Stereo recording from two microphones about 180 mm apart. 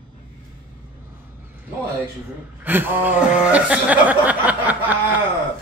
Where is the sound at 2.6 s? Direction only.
10° right (ahead or behind).